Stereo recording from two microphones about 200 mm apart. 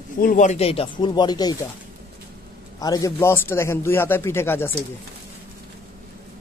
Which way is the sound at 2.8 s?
20° left (ahead or behind).